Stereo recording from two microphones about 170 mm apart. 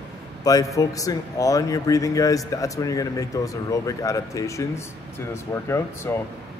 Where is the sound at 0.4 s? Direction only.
20° left (ahead or behind).